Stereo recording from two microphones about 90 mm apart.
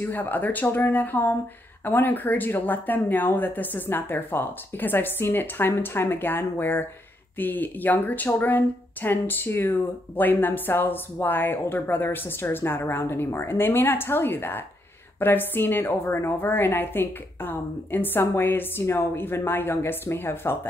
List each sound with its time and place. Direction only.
0.0 s a woman's voice: 20° left (ahead or behind)